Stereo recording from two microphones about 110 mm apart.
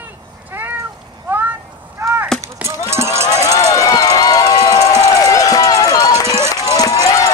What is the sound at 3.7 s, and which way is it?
Run, 30° left (ahead or behind).